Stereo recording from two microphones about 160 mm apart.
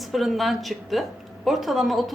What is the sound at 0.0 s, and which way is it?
Speech, centre (ahead or behind).